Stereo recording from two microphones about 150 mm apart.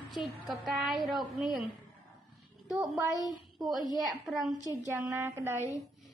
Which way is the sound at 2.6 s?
5° right (ahead or behind).